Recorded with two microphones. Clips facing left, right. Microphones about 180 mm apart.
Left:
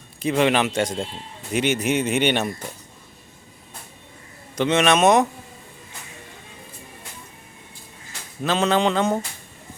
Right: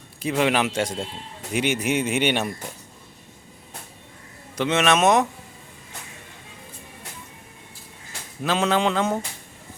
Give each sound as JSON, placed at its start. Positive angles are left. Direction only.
{"t": 0.2, "sound": "speech", "side_deg": -5}
{"t": 4.5, "sound": "a man's voice", "side_deg": -5}
{"t": 8.4, "sound": "a man's voice", "side_deg": -5}